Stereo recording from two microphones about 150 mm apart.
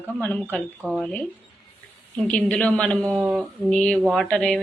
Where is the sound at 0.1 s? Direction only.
10° left (ahead or behind).